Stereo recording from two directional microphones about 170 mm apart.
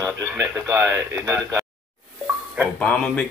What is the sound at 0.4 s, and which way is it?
Speech, 15° right (ahead or behind).